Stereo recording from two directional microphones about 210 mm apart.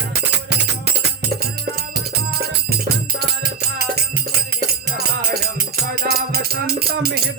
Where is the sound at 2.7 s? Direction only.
50° right (ahead or behind).